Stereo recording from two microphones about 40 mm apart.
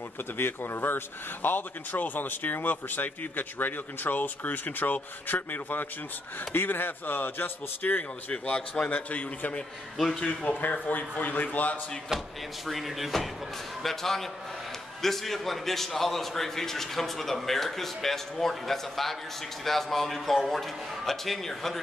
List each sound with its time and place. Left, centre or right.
0.4 s speech: left
8.3 s a man's voice: left
10.9 s speech: left
12.6 s a man's voice: centre